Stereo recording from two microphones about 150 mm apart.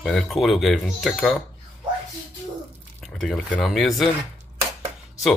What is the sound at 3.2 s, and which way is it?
Speech, 5° left (ahead or behind).